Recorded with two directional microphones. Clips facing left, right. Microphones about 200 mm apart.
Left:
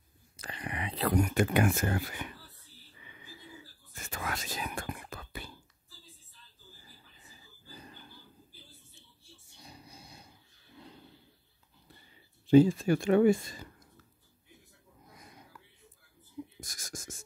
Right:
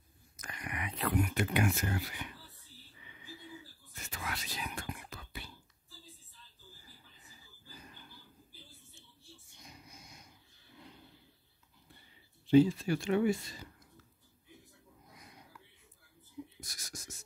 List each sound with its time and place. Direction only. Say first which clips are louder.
0.4 s speech: left 3 dB; 30° left (ahead or behind); by 2.2 s 50° left (ahead or behind)
3.9 s whispering: left 4 dB; 50° left (ahead or behind)
9.5 s a sound: left 5 dB; 35° left (ahead or behind)
12.4 s speech: left 3 dB; 45° left (ahead or behind)
16.5 s writing: left 4 dB; 50° left (ahead or behind)